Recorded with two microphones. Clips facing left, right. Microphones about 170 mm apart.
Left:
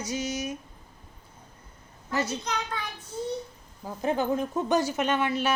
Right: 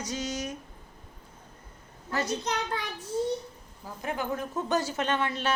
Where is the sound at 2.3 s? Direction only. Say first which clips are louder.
Right 2 dB; 35° right (ahead or behind).